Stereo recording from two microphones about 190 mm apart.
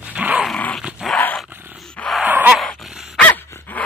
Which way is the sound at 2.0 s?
Centre (ahead or behind).